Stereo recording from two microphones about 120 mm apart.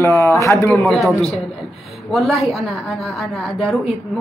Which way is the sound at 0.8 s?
Centre (ahead or behind).